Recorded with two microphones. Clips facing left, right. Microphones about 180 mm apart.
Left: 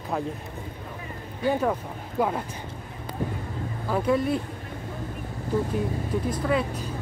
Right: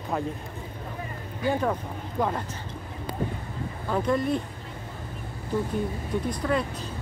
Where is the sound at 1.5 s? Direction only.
5° left (ahead or behind).